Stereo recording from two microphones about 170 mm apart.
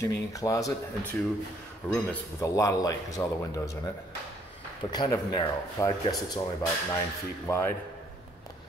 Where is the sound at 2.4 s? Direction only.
20° left (ahead or behind).